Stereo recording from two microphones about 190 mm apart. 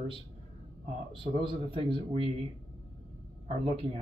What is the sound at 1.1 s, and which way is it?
Speech, 25° right (ahead or behind).